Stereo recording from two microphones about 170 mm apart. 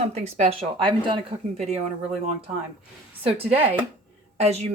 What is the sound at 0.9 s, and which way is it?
Speech, 25° right (ahead or behind).